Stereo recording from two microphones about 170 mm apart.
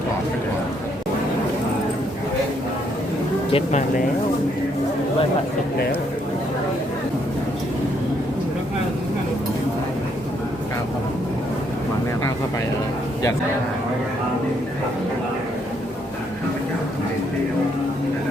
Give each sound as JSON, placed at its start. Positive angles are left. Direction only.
{"t": 3.5, "sound": "speech", "side_deg": 45}